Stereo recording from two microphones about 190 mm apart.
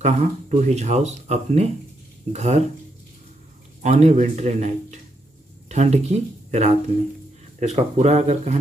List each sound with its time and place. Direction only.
0.0 s speech: 35° right (ahead or behind)
3.8 s speech: 35° right (ahead or behind)